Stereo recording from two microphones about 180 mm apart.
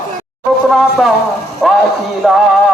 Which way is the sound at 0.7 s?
Centre (ahead or behind).